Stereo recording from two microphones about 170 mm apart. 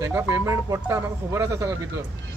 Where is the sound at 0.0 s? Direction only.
15° right (ahead or behind).